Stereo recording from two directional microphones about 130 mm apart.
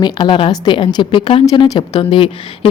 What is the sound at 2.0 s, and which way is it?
Speech, 45° left (ahead or behind).